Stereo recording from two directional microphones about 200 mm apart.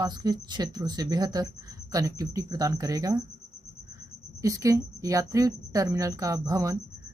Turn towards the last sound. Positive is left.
turn(degrees=-15)  # may be behind; listen again after turning